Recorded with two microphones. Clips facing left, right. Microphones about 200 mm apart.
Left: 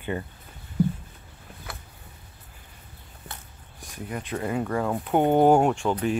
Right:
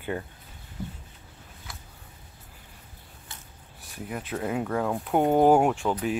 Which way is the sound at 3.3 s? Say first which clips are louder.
Left 5 dB; 60° left (ahead or behind).